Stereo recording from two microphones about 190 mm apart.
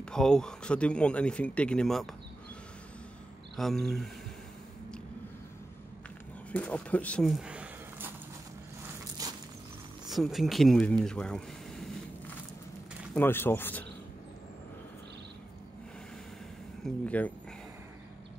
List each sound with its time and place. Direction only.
0.0 s a man's voice: 5° left (ahead or behind)
3.5 s a man's voice: centre (ahead or behind)
6.5 s speech: 10° left (ahead or behind)
9.2 s a sound: 20° right (ahead or behind)
10.0 s speech: centre (ahead or behind)
13.1 s speech: 10° left (ahead or behind)
16.8 s speech: 5° left (ahead or behind)